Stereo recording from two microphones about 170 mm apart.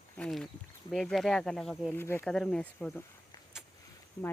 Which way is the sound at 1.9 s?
15° left (ahead or behind).